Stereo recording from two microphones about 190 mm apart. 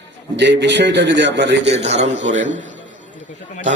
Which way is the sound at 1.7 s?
35° right (ahead or behind).